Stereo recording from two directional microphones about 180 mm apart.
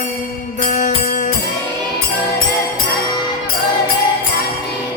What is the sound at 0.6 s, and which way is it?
Music, 40° left (ahead or behind).